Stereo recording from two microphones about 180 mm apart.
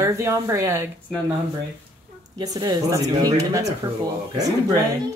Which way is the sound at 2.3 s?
25° right (ahead or behind).